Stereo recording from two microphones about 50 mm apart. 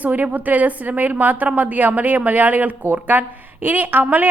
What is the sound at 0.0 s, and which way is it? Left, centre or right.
Speech, right.